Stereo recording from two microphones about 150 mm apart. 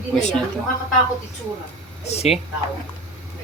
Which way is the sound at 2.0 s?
45° left (ahead or behind).